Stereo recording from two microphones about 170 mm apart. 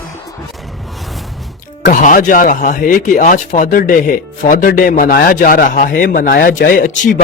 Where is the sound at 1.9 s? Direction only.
50° left (ahead or behind).